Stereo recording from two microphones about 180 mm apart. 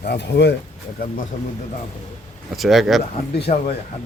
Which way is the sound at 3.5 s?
45° left (ahead or behind).